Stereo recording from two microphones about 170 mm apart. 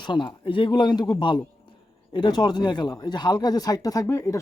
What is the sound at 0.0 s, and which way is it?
Speech, 25° left (ahead or behind).